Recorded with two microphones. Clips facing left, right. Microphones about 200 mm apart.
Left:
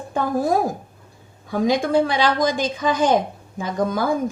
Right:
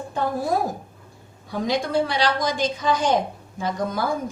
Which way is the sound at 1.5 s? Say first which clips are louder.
Left 5 dB; 50° left (ahead or behind).